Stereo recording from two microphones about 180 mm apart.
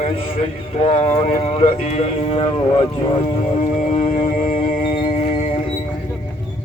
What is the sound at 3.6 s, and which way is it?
Music, 45° left (ahead or behind).